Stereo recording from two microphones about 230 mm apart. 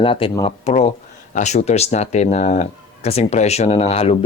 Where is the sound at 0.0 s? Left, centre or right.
Left.